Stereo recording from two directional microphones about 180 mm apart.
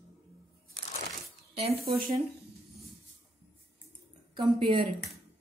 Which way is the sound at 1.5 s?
35° right (ahead or behind).